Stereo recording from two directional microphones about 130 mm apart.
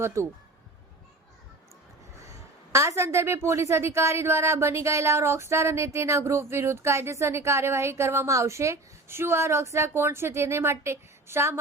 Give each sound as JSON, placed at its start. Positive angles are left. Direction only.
{"t": 0.0, "sound": "a woman's voice", "side_deg": -20}
{"t": 2.7, "sound": "a woman's voice", "side_deg": -20}